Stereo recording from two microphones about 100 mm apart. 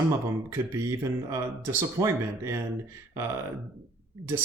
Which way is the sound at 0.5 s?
30° right (ahead or behind).